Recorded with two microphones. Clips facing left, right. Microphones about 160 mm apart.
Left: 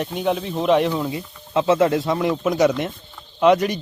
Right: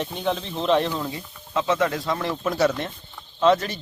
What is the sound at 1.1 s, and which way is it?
A man's voice, 25° left (ahead or behind).